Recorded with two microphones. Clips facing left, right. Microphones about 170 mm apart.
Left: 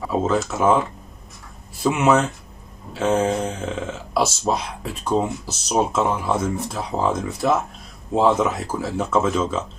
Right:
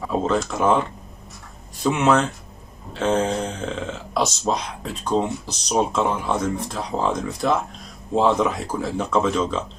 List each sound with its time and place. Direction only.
0.1 s speech: 5° left (ahead or behind)